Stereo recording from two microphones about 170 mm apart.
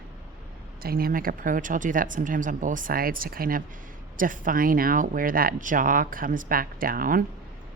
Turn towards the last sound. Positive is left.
turn(degrees=-55)  # may be behind; listen again after turning